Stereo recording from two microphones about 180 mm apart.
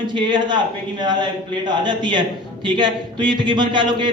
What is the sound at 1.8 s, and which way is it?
A man's voice, 25° right (ahead or behind).